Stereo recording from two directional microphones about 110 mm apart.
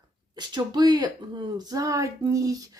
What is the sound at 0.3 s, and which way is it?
Speech, 40° right (ahead or behind).